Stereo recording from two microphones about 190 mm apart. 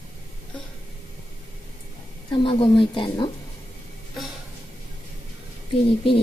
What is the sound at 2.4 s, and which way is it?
Speech, 25° left (ahead or behind).